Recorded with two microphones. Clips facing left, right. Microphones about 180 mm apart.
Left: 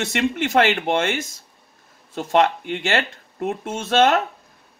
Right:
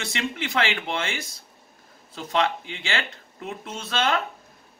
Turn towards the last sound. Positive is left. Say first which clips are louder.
# left 8 dB
turn(degrees=45)  # may be behind; listen again after turning